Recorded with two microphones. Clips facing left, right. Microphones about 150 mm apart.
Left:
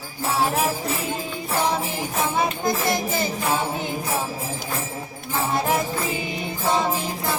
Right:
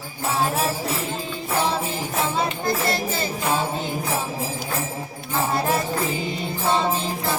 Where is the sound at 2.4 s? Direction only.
20° left (ahead or behind).